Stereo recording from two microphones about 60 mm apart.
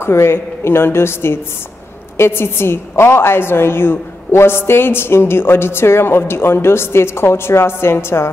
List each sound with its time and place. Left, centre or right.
0.0 s a woman's voice: left